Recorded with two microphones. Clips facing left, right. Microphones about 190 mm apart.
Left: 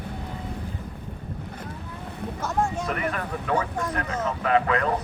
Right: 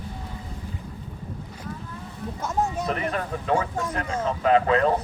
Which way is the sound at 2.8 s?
30° right (ahead or behind).